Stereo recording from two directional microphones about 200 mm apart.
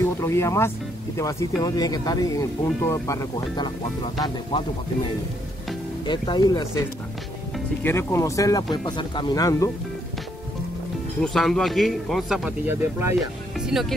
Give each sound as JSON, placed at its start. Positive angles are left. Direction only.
{"t": 0.0, "sound": "speech", "side_deg": 15}
{"t": 7.8, "sound": "speech", "side_deg": 10}
{"t": 11.2, "sound": "speech", "side_deg": 0}